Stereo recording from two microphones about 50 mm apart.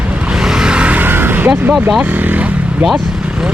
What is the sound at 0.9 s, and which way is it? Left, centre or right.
Vehicle, right.